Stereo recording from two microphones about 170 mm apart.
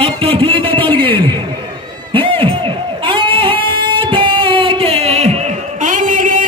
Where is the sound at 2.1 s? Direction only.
30° right (ahead or behind).